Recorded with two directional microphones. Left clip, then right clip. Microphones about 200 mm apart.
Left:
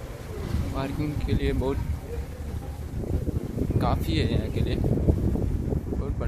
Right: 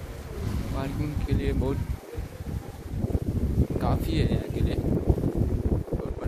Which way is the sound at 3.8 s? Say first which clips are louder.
Left 3 dB; centre (ahead or behind).